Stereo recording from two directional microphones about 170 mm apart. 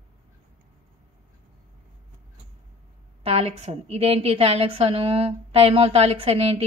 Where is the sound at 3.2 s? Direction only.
40° right (ahead or behind).